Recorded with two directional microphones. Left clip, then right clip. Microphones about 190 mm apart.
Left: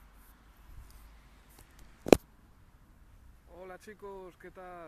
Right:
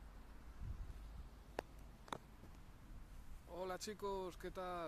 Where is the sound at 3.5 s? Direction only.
10° right (ahead or behind).